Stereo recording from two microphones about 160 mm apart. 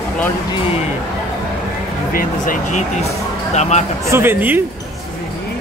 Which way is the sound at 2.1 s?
60° left (ahead or behind).